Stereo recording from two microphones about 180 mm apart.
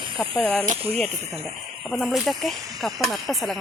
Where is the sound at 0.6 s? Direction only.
40° right (ahead or behind).